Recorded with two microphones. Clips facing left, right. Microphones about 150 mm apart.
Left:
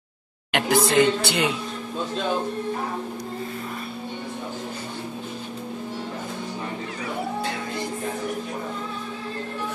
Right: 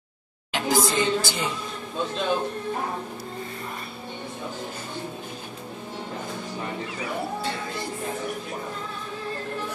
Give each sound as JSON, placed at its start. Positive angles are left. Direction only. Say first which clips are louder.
{"t": 0.5, "sound": "speech", "louder": "left 2 dB", "side_deg": 60}